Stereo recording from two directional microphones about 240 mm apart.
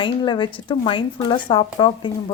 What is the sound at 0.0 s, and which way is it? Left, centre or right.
Speech, centre.